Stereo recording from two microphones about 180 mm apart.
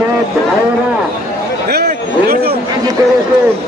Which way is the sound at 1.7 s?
60° right (ahead or behind).